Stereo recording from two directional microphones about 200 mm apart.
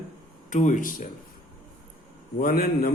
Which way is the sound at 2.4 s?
50° left (ahead or behind).